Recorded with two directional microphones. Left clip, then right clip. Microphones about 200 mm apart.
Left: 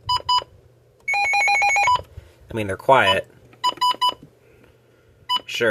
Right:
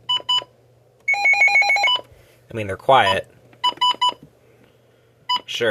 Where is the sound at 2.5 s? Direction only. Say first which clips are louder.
Right 1 dB; 5° left (ahead or behind).